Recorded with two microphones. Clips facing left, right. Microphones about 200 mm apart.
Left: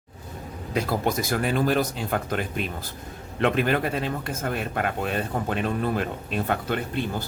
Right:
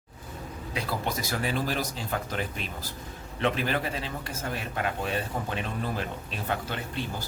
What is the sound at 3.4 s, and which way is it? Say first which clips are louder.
A man's voice: left 5 dB; 55° left (ahead or behind).